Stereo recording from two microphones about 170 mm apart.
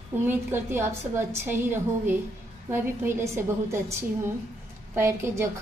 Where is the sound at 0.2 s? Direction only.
15° right (ahead or behind).